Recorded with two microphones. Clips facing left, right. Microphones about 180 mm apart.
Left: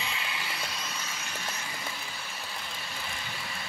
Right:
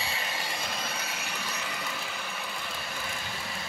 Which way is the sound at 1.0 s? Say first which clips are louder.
Right 3 dB; 65° right (ahead or behind).